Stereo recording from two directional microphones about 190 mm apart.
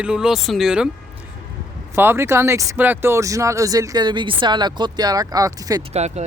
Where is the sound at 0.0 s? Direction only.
5° right (ahead or behind).